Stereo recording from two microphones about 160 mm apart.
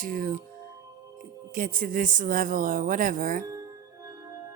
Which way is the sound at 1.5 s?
60° right (ahead or behind).